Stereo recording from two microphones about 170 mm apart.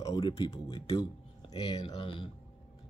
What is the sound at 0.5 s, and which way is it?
Speech, 20° left (ahead or behind).